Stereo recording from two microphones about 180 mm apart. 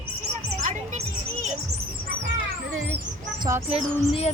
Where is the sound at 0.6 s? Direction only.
40° right (ahead or behind).